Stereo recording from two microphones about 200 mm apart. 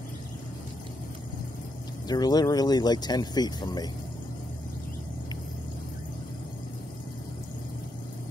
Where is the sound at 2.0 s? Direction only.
20° left (ahead or behind).